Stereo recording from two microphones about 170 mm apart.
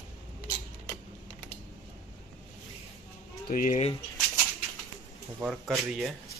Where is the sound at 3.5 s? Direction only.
55° left (ahead or behind).